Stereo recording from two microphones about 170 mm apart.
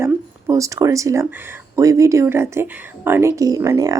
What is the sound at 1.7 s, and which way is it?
Speech, 20° right (ahead or behind).